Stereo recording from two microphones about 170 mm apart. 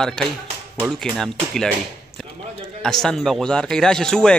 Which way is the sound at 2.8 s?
Centre (ahead or behind).